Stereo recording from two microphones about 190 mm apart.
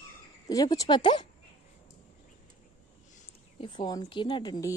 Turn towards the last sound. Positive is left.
turn(degrees=20)  # may be behind; listen again after turning